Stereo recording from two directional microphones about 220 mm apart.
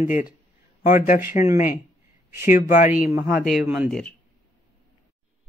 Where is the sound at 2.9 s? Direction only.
5° right (ahead or behind).